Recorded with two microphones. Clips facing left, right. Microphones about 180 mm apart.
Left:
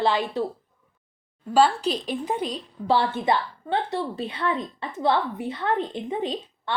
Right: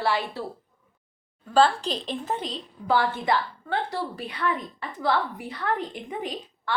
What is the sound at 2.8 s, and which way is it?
A woman's voice, 25° left (ahead or behind).